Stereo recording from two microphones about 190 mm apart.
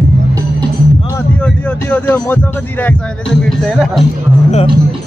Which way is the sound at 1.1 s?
10° left (ahead or behind).